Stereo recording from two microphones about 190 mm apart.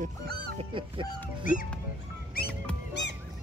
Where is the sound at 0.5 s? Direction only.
25° right (ahead or behind).